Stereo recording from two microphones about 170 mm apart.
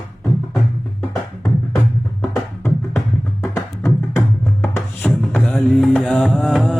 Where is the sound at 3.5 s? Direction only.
15° left (ahead or behind).